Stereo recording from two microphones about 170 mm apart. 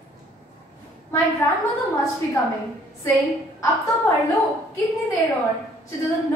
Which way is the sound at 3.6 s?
20° left (ahead or behind).